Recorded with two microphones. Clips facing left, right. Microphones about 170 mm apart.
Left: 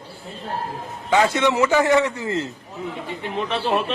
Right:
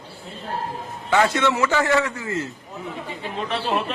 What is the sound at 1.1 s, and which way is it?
A man's voice, 15° left (ahead or behind).